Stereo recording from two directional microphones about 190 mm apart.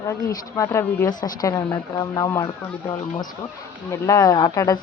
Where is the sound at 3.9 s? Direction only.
15° left (ahead or behind).